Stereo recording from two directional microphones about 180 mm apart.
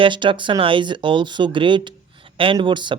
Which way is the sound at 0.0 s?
25° right (ahead or behind).